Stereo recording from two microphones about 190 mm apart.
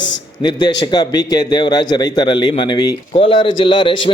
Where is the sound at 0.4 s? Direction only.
25° left (ahead or behind).